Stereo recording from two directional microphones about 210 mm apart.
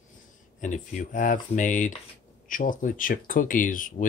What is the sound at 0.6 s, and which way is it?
Speech, 35° left (ahead or behind).